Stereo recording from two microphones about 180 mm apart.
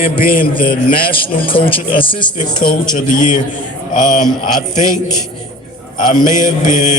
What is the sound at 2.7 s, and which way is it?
Speech, 45° left (ahead or behind).